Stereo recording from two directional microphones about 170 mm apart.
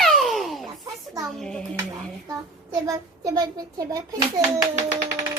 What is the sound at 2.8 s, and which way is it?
A child's voice, 20° right (ahead or behind).